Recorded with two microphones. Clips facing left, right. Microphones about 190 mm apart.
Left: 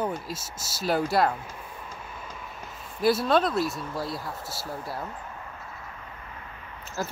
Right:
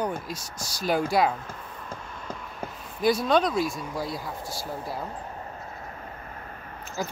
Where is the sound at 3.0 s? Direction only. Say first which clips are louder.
Even; 5° left (ahead or behind).